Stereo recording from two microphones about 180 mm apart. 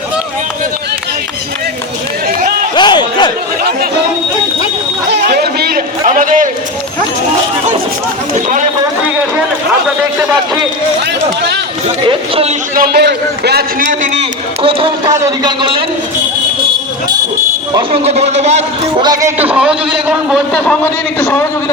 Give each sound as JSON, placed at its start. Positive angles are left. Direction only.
{"t": 2.7, "sound": "a sound", "side_deg": 25}
{"t": 3.6, "sound": "chatter", "side_deg": -60}
{"t": 5.3, "sound": "a sound", "side_deg": -60}
{"t": 12.0, "sound": "a man's voice", "side_deg": -30}
{"t": 12.7, "sound": "a man's voice", "side_deg": -55}
{"t": 14.0, "sound": "a man's voice", "side_deg": -35}
{"t": 18.0, "sound": "a man's voice", "side_deg": -35}
{"t": 18.9, "sound": "a man's voice", "side_deg": -20}
{"t": 19.4, "sound": "a man's voice", "side_deg": -5}